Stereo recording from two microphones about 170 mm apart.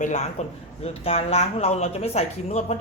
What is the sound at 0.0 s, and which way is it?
A man's voice, 40° left (ahead or behind).